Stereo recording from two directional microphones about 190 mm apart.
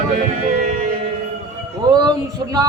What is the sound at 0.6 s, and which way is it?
Music, 40° right (ahead or behind).